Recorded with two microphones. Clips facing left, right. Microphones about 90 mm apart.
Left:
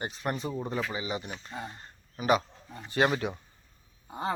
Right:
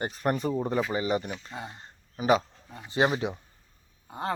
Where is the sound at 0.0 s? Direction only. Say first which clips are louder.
Right 5 dB; 45° right (ahead or behind).